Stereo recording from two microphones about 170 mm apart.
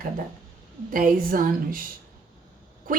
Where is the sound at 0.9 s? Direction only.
55° right (ahead or behind).